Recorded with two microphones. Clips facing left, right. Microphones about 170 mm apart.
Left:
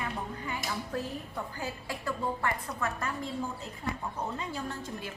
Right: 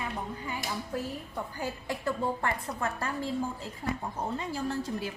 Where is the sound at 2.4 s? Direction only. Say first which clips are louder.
Right 1 dB; 30° right (ahead or behind).